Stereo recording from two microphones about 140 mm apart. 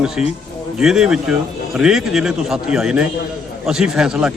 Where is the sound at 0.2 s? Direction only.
5° right (ahead or behind).